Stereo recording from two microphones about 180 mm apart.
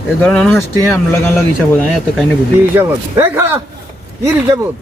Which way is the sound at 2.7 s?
10° right (ahead or behind).